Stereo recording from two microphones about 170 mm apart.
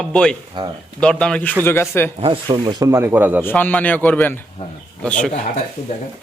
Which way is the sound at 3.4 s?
10° left (ahead or behind).